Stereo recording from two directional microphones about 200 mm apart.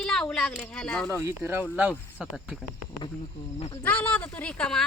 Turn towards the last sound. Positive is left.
turn(degrees=5)  # may be behind; listen again after turning